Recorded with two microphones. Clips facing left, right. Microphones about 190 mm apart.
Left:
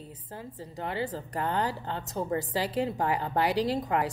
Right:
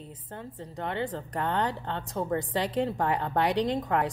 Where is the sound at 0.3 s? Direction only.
5° left (ahead or behind).